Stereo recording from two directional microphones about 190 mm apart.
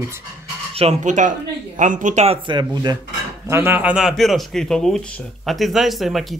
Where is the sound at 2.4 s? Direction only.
20° right (ahead or behind); by 6.3 s centre (ahead or behind).